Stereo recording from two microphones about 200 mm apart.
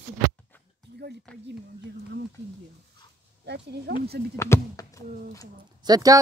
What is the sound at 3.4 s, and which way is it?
Speech, 55° right (ahead or behind).